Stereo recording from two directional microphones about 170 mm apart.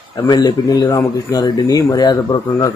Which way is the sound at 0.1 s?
25° left (ahead or behind).